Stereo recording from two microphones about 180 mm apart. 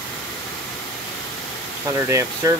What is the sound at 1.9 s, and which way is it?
Speech, 15° right (ahead or behind).